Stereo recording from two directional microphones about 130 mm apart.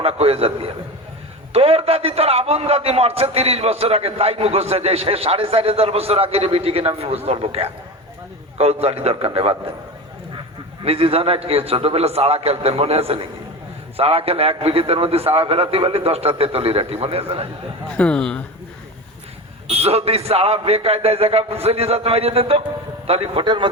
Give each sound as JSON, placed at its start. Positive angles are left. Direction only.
{"t": 0.0, "sound": "a man's voice", "side_deg": -50}
{"t": 10.8, "sound": "a man's voice", "side_deg": -45}
{"t": 17.8, "sound": "a man's voice", "side_deg": 10}
{"t": 19.7, "sound": "a man's voice", "side_deg": -50}